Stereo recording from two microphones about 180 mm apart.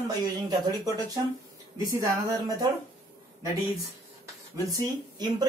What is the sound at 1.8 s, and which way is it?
Speech, 20° right (ahead or behind).